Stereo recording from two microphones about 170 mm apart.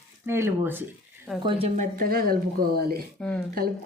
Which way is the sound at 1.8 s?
60° right (ahead or behind).